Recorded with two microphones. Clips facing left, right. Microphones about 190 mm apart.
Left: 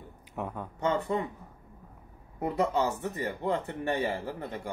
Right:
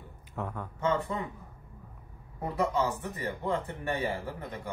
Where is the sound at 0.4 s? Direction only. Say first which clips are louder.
Left 1 dB; 15° left (ahead or behind).